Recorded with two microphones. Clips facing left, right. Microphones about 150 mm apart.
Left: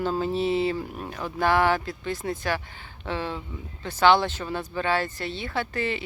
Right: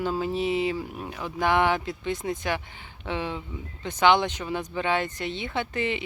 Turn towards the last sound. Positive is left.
turn(degrees=-20)  # may be behind; listen again after turning